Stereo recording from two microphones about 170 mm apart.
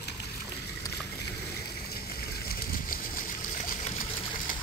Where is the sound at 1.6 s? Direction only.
65° left (ahead or behind).